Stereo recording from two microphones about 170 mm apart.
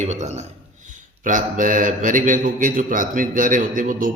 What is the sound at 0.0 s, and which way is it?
A man's voice, 45° right (ahead or behind).